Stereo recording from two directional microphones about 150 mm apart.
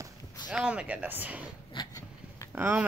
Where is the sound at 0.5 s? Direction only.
5° right (ahead or behind).